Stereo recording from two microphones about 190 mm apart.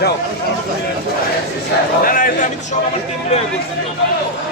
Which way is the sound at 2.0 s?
50° left (ahead or behind).